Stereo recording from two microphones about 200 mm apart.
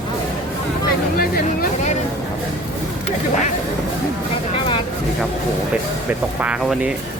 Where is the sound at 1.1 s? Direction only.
50° left (ahead or behind).